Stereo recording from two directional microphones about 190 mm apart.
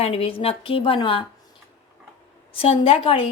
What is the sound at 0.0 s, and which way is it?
A woman's voice, 30° left (ahead or behind).